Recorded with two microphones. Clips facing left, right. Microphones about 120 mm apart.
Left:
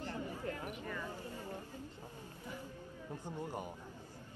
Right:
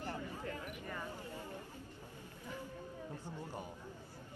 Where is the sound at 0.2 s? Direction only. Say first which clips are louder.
Left 2 dB; 20° left (ahead or behind).